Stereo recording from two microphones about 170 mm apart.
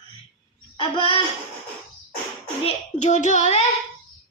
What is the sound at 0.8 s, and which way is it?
Child singing, 30° left (ahead or behind).